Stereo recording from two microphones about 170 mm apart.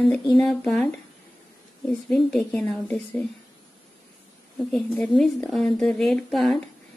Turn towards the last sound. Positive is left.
turn(degrees=0)  # may be behind; listen again after turning